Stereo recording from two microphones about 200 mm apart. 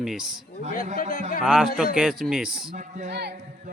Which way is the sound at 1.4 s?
Centre (ahead or behind).